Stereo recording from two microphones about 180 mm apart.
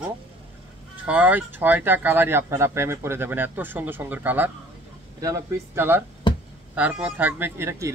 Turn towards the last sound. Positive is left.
turn(degrees=-15)  # may be behind; listen again after turning